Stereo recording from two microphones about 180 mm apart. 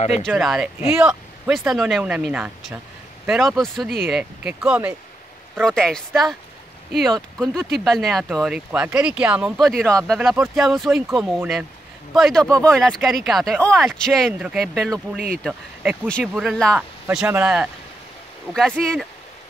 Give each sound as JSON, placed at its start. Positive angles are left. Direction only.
{"t": 0.3, "sound": "speech", "side_deg": 0}
{"t": 15.1, "sound": "speech", "side_deg": -55}
{"t": 15.4, "sound": "speech", "side_deg": -5}
{"t": 18.5, "sound": "speech", "side_deg": 5}